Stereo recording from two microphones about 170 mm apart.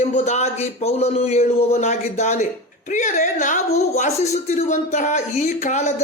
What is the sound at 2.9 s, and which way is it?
Speech, 45° left (ahead or behind).